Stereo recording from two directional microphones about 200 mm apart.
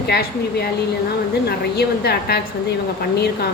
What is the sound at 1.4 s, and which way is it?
Speech, 55° left (ahead or behind).